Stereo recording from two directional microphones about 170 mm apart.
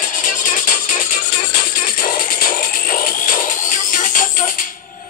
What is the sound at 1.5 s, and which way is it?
Music, 60° left (ahead or behind).